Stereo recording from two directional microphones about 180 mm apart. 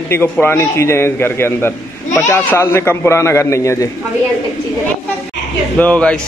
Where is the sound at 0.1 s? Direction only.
10° left (ahead or behind).